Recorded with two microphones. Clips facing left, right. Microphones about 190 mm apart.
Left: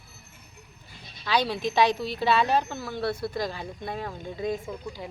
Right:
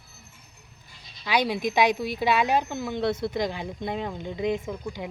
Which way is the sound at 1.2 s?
15° right (ahead or behind).